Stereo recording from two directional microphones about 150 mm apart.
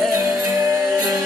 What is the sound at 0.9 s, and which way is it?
Music, centre (ahead or behind).